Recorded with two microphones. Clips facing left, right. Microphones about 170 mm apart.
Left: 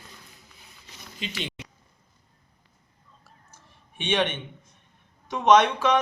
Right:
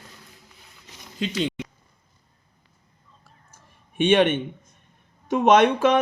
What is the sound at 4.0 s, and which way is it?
Speech, 50° right (ahead or behind).